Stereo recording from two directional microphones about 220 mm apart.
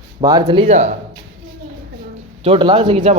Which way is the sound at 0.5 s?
30° right (ahead or behind).